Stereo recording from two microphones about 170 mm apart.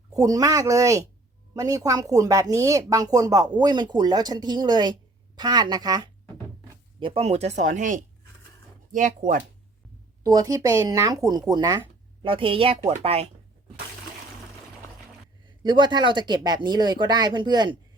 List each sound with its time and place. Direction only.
0.1 s speech: 20° right (ahead or behind)
7.0 s speech: 35° right (ahead or behind)
10.2 s speech: 20° right (ahead or behind)
15.6 s speech: 25° right (ahead or behind)